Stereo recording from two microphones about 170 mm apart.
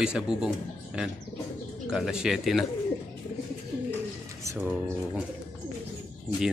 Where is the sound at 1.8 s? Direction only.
5° right (ahead or behind).